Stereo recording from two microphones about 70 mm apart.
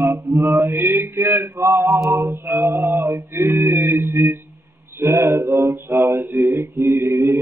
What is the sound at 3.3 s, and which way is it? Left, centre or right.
Mantra, right.